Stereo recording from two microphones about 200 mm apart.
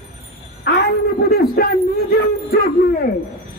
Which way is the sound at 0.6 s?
50° left (ahead or behind).